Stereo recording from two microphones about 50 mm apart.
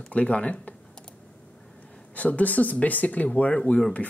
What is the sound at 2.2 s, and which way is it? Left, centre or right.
Speech, left.